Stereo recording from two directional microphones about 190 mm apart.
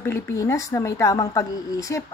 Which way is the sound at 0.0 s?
15° left (ahead or behind).